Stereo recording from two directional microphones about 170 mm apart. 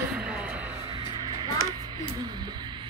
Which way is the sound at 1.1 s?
25° right (ahead or behind).